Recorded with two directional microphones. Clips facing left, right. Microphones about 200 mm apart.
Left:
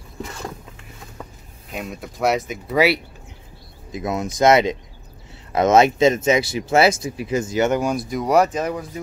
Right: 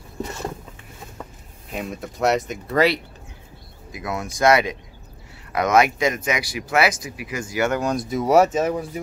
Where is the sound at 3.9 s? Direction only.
20° left (ahead or behind).